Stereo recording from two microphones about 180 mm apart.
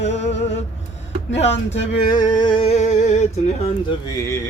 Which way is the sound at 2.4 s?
25° left (ahead or behind).